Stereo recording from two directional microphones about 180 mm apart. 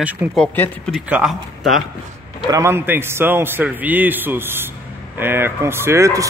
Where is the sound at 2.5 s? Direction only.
15° right (ahead or behind).